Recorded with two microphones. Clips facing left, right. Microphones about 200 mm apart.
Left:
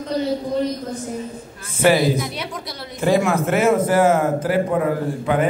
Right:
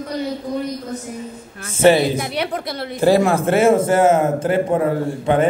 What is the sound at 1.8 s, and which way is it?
Speech, 25° right (ahead or behind).